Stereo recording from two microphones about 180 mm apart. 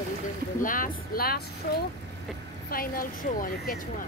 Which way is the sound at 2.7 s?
50° left (ahead or behind).